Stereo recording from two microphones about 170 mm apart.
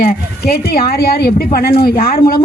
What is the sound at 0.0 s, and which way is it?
Speech, 65° left (ahead or behind).